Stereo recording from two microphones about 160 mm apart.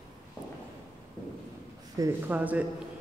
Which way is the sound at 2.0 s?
20° right (ahead or behind).